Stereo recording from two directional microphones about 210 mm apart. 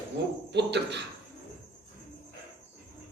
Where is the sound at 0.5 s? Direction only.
55° right (ahead or behind).